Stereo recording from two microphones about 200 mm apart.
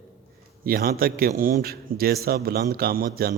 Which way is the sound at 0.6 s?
45° right (ahead or behind).